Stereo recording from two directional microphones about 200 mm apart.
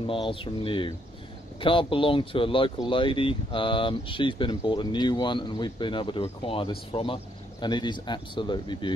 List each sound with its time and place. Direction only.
0.0 s speech: 25° left (ahead or behind)